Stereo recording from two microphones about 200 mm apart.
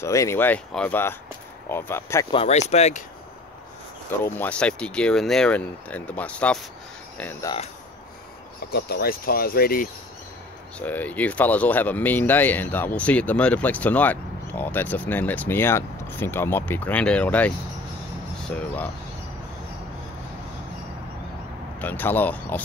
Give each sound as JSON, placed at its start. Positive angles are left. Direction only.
{"t": 0.0, "sound": "speech", "side_deg": 15}
{"t": 2.3, "sound": "speech", "side_deg": 30}
{"t": 4.2, "sound": "speech", "side_deg": 10}
{"t": 7.4, "sound": "speech", "side_deg": 30}
{"t": 8.7, "sound": "speech", "side_deg": 55}
{"t": 10.8, "sound": "speech", "side_deg": 10}
{"t": 21.7, "sound": "speech", "side_deg": 10}